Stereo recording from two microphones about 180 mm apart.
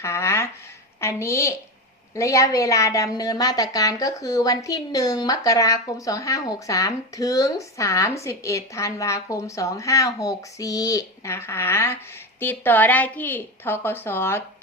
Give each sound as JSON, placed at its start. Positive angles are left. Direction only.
{"t": 0.0, "sound": "a woman's voice", "side_deg": 15}